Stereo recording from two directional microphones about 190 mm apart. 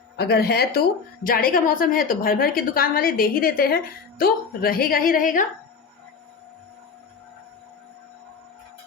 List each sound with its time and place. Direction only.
0.2 s a woman's voice: 55° left (ahead or behind)